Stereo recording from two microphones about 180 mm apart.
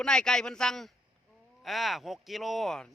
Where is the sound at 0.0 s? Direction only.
5° left (ahead or behind).